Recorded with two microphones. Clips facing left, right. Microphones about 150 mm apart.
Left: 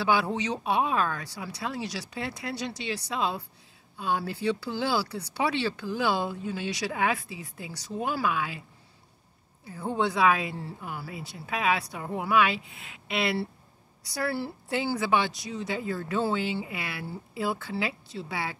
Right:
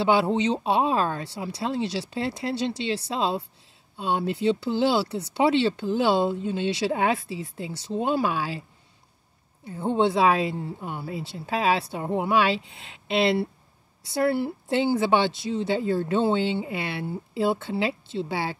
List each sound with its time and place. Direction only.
0.0 s speech: 25° right (ahead or behind)
9.7 s speech: 25° right (ahead or behind)